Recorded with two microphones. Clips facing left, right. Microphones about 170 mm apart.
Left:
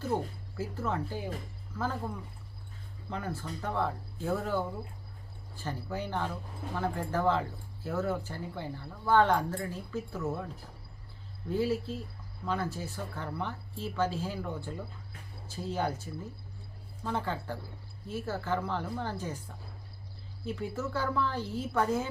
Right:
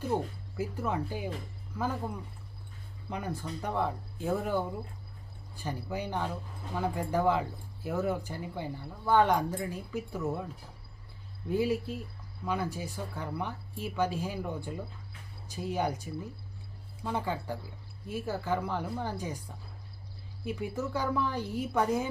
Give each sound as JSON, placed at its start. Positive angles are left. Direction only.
{"t": 0.0, "sound": "speech", "side_deg": -15}
{"t": 11.4, "sound": "speech", "side_deg": -15}
{"t": 20.4, "sound": "speech", "side_deg": -15}